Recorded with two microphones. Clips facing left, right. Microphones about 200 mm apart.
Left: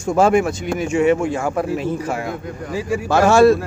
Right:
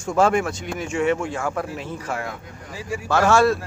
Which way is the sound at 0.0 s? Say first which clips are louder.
Left 4 dB; 10° left (ahead or behind).